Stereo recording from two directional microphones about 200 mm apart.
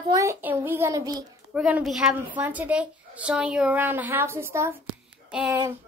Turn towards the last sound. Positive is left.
turn(degrees=-15)  # may be behind; listen again after turning